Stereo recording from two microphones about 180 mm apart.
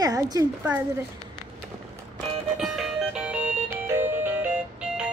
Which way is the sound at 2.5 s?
Centre (ahead or behind).